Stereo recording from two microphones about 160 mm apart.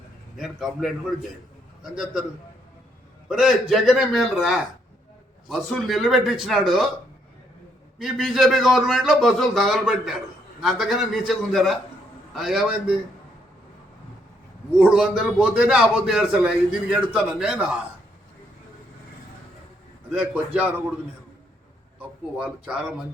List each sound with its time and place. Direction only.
0.3 s a man's voice: centre (ahead or behind)
3.2 s a man's voice: 5° right (ahead or behind)
7.9 s a man's voice: centre (ahead or behind)
14.8 s a man's voice: 5° right (ahead or behind)
20.1 s a man's voice: 5° right (ahead or behind)
22.4 s a man's voice: 5° right (ahead or behind)